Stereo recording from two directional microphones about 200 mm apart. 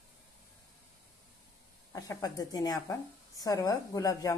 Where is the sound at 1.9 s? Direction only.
15° left (ahead or behind).